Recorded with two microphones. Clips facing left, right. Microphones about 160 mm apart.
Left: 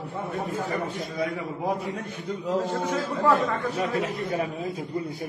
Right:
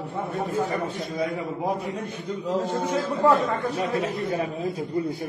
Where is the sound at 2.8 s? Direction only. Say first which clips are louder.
Right 5 dB; 20° right (ahead or behind).